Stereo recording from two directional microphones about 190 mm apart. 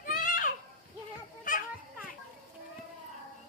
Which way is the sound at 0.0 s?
45° left (ahead or behind).